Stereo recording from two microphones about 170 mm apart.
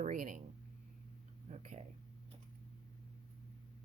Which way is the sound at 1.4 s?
40° right (ahead or behind).